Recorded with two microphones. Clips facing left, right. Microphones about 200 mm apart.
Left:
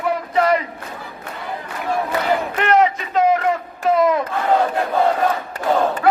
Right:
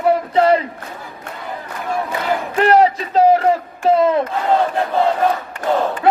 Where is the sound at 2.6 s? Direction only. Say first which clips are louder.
Right 5 dB; 35° right (ahead or behind).